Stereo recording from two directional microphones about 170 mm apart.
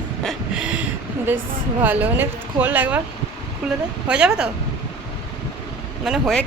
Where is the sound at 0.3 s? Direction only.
5° right (ahead or behind).